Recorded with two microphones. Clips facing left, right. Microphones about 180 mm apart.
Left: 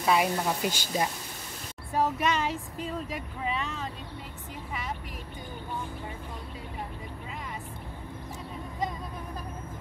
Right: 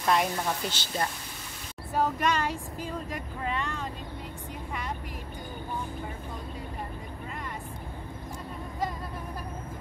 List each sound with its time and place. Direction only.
0.0 s speech: 5° left (ahead or behind)